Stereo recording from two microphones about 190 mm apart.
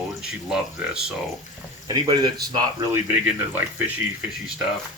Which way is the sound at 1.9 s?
25° right (ahead or behind).